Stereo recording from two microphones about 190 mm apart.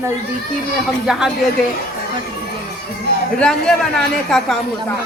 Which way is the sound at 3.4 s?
5° left (ahead or behind).